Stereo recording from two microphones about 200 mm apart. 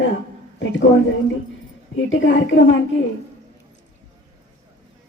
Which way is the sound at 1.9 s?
70° left (ahead or behind).